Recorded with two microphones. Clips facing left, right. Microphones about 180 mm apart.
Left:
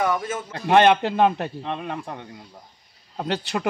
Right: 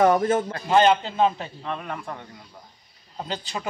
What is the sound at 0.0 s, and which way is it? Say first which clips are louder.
Speech: right 6 dB; 50° right (ahead or behind).